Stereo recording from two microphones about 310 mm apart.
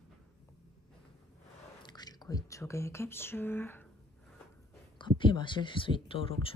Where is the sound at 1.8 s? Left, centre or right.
Centre.